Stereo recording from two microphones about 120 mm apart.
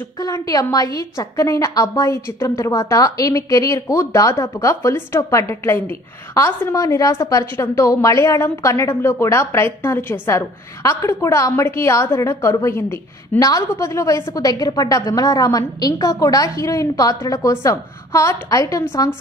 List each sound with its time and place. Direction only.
0.2 s a woman's voice: 30° left (ahead or behind)